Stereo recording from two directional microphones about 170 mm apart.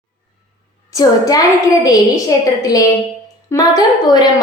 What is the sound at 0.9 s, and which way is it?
A woman's voice, 20° left (ahead or behind).